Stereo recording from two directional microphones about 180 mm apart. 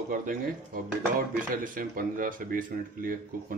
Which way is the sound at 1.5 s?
50° right (ahead or behind).